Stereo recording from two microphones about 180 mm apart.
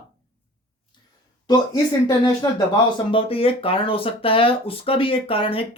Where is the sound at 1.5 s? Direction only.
25° left (ahead or behind).